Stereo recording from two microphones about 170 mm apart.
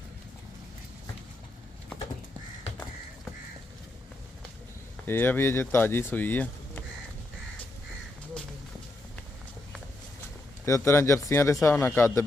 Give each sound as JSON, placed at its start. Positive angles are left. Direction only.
{"t": 5.0, "sound": "speech", "side_deg": 10}
{"t": 10.7, "sound": "speech", "side_deg": 15}